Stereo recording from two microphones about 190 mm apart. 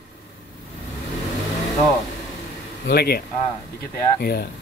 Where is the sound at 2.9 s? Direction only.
55° left (ahead or behind).